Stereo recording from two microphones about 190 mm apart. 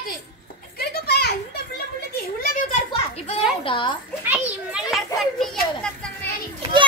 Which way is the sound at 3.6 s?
25° left (ahead or behind).